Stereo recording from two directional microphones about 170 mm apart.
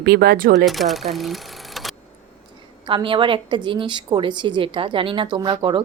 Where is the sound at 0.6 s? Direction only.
Centre (ahead or behind).